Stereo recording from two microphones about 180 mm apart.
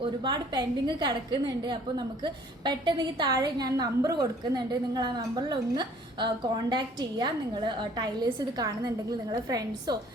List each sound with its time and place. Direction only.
0.0 s a woman's voice: 25° right (ahead or behind)